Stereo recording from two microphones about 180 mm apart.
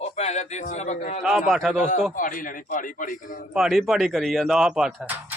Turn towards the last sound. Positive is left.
turn(degrees=-5)  # may be behind; listen again after turning